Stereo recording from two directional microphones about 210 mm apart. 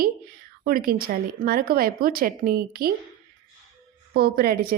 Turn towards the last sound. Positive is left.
turn(degrees=-45)  # may be behind; listen again after turning